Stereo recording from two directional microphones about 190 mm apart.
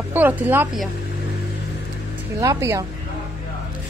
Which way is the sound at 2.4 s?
15° right (ahead or behind).